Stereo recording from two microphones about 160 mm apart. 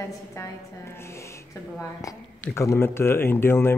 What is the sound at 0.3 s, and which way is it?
A woman's voice, 15° left (ahead or behind).